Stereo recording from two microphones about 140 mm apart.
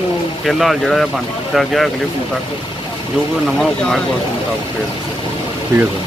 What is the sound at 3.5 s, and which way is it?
Speech, 5° left (ahead or behind).